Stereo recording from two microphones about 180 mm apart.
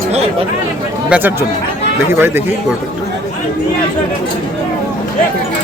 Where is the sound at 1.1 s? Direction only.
10° right (ahead or behind).